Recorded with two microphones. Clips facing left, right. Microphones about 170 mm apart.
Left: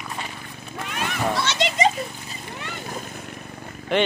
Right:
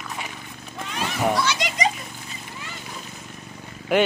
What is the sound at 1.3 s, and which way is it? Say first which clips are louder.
Children playing: left 1 dB; 25° left (ahead or behind).